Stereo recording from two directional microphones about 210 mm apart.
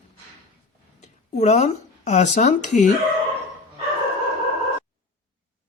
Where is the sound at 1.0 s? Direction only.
30° left (ahead or behind).